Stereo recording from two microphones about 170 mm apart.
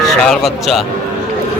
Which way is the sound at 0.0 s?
Centre (ahead or behind).